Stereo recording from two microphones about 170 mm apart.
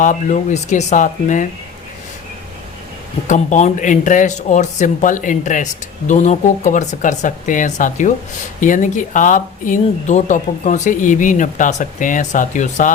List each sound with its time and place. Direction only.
0.0 s speech: 50° left (ahead or behind)
3.2 s speech: 45° left (ahead or behind)